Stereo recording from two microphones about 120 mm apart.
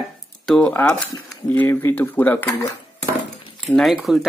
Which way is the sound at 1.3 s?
10° left (ahead or behind).